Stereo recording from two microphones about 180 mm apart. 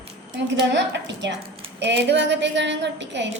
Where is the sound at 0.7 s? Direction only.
75° right (ahead or behind).